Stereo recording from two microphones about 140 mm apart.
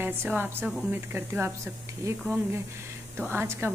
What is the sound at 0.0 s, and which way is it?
Speech, 15° right (ahead or behind).